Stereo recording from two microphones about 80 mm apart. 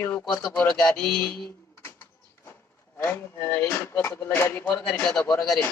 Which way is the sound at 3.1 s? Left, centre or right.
Left.